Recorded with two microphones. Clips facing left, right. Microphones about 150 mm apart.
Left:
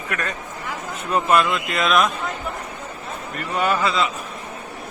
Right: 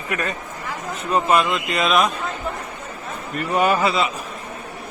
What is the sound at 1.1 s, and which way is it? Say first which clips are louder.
Speech: even; 5° right (ahead or behind).